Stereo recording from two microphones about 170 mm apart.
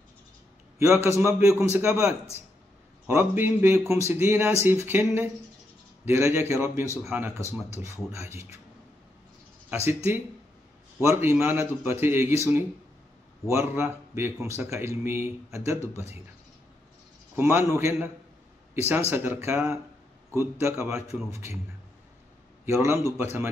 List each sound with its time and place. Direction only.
0.7 s a man's voice: 15° right (ahead or behind)
11.0 s a man's voice: 15° right (ahead or behind)
17.4 s a man's voice: 15° right (ahead or behind)
22.7 s a man's voice: 15° right (ahead or behind)